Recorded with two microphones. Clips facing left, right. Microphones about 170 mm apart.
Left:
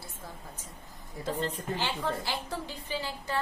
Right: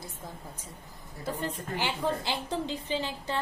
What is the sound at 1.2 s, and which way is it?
A woman's voice, 10° right (ahead or behind).